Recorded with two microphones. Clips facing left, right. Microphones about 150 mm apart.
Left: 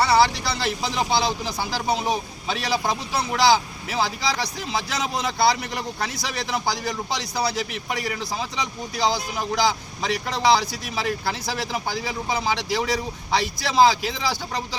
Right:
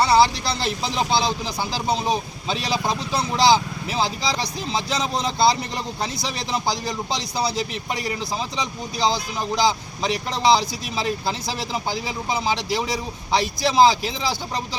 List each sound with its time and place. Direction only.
0.0 s a man's voice: 15° right (ahead or behind)